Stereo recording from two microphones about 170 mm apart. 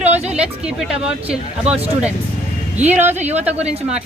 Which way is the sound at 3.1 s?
40° right (ahead or behind).